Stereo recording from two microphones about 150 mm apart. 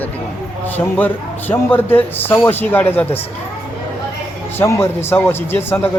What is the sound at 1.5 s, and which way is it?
A man's voice, 10° left (ahead or behind).